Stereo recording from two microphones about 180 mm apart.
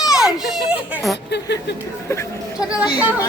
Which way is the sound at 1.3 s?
70° left (ahead or behind).